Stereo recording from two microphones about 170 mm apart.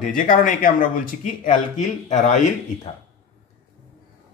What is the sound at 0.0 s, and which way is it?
Speech, 50° left (ahead or behind).